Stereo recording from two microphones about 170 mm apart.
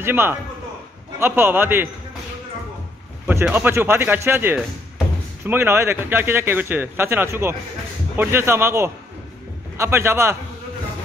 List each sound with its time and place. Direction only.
0.0 s speech: 10° right (ahead or behind)
3.3 s speech: 10° right (ahead or behind)